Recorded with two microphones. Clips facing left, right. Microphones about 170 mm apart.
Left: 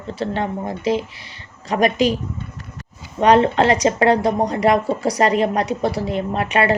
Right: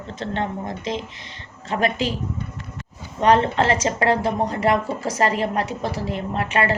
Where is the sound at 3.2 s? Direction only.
15° left (ahead or behind).